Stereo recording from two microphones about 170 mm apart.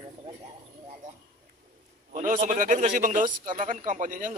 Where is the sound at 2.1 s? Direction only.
50° right (ahead or behind).